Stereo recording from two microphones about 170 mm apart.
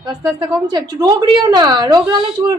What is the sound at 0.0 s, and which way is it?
A woman's voice, 20° right (ahead or behind).